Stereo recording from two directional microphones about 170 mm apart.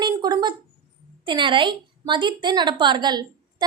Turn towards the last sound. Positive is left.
turn(degrees=-25)  # may be behind; listen again after turning